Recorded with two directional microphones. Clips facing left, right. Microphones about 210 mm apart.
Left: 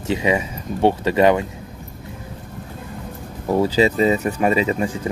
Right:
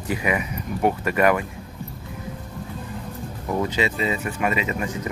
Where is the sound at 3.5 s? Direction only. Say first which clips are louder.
Left 7 dB; 35° left (ahead or behind).